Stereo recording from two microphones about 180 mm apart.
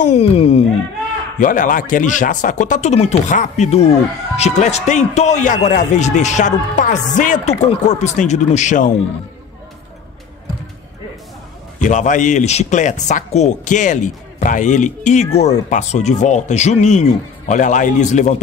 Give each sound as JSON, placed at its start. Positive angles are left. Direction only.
{"t": 0.0, "sound": "a sound", "side_deg": 35}
{"t": 1.4, "sound": "speech", "side_deg": 45}
{"t": 11.8, "sound": "speech", "side_deg": 45}